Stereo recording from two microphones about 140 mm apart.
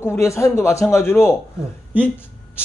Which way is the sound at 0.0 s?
20° left (ahead or behind).